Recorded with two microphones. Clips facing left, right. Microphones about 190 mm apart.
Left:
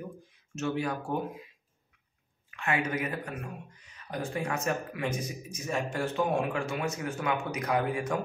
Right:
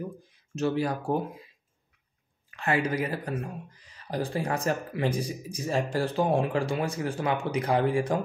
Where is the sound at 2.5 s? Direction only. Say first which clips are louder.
Right 3 dB; 35° right (ahead or behind).